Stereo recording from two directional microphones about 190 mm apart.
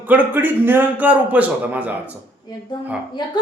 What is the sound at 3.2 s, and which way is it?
Speech, 25° left (ahead or behind).